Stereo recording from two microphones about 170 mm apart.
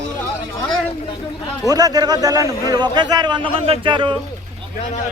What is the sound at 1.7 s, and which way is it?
A man's voice, 20° right (ahead or behind).